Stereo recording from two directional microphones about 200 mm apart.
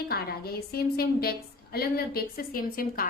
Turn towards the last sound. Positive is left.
turn(degrees=45)  # may be behind; listen again after turning